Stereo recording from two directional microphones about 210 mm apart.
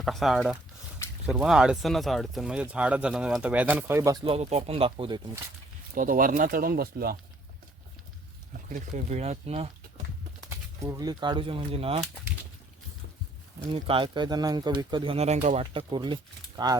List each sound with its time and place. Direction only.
0.0 s speech: centre (ahead or behind); by 5.4 s 20° right (ahead or behind)
5.9 s speech: 40° right (ahead or behind)
8.7 s speech: 35° right (ahead or behind)
10.8 s speech: 20° right (ahead or behind)
13.7 s speech: 25° right (ahead or behind)